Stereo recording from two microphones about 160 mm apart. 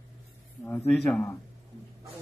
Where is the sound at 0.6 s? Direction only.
10° left (ahead or behind).